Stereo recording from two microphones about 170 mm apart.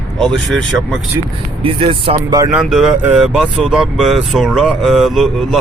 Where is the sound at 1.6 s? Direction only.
30° right (ahead or behind).